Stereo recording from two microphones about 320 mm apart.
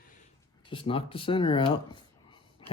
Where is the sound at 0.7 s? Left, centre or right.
Centre.